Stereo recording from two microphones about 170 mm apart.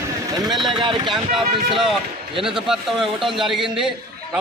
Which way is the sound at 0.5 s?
Centre (ahead or behind).